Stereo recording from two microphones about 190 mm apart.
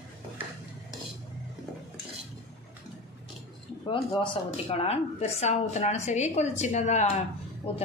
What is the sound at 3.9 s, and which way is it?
A woman's voice, 25° left (ahead or behind).